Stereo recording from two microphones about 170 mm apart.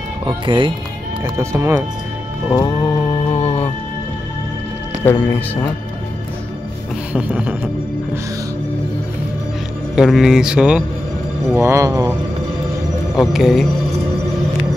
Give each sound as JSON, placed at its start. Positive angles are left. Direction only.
{"t": 0.5, "sound": "speech", "side_deg": -30}
{"t": 1.2, "sound": "speech", "side_deg": -15}
{"t": 2.6, "sound": "music", "side_deg": 15}
{"t": 5.0, "sound": "speech", "side_deg": 10}
{"t": 7.1, "sound": "speech", "side_deg": -5}
{"t": 9.9, "sound": "speech", "side_deg": 0}
{"t": 11.5, "sound": "speech", "side_deg": -15}
{"t": 13.1, "sound": "speech", "side_deg": 0}